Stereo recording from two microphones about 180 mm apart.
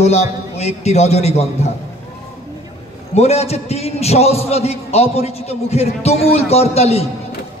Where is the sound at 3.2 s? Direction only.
35° left (ahead or behind).